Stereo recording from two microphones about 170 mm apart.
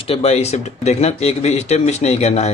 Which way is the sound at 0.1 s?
40° left (ahead or behind).